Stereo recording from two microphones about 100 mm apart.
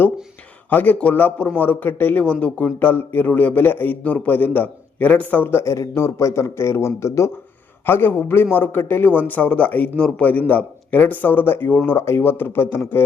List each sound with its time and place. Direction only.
0.7 s a man's voice: 15° left (ahead or behind)